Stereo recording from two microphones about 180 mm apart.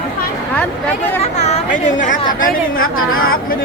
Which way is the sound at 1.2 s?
35° left (ahead or behind).